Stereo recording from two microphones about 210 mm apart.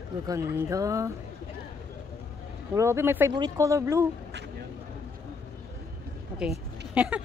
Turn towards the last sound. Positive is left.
turn(degrees=-5)  # may be behind; listen again after turning